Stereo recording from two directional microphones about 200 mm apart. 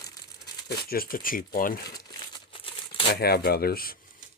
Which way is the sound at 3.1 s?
50° left (ahead or behind).